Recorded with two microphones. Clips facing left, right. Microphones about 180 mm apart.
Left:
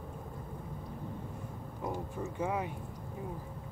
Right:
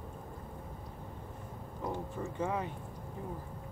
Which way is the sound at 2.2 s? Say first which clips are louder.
Left 1 dB; 10° left (ahead or behind).